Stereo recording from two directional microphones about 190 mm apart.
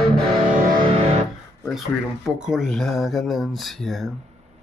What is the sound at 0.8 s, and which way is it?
Music, 30° right (ahead or behind).